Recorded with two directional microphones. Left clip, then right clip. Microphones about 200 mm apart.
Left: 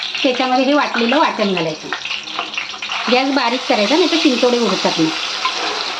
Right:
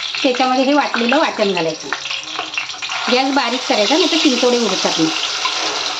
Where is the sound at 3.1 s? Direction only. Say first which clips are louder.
Left 1 dB; 10° left (ahead or behind).